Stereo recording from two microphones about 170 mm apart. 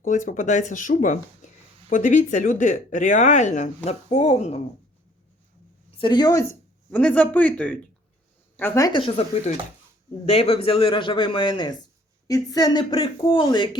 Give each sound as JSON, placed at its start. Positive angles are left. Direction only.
{"t": 0.0, "sound": "speech", "side_deg": 50}
{"t": 1.4, "sound": "a sound", "side_deg": 45}
{"t": 1.9, "sound": "a man's voice", "side_deg": 50}
{"t": 6.0, "sound": "speech", "side_deg": 25}
{"t": 6.9, "sound": "a man's voice", "side_deg": 10}